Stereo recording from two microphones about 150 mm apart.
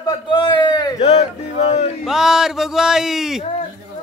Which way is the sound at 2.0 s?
5° right (ahead or behind).